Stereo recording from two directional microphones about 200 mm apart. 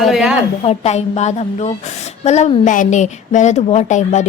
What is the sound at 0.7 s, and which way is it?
A woman's voice, 35° left (ahead or behind).